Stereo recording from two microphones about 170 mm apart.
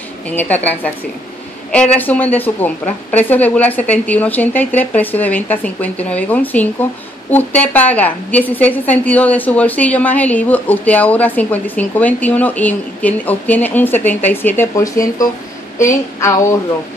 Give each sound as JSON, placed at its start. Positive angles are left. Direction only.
{"t": 0.3, "sound": "a woman's voice", "side_deg": 10}